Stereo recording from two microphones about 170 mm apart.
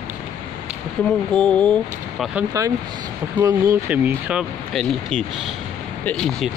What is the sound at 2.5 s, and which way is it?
Speech, 20° right (ahead or behind).